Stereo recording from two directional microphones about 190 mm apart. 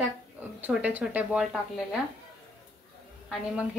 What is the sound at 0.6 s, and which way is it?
Speech, 10° right (ahead or behind).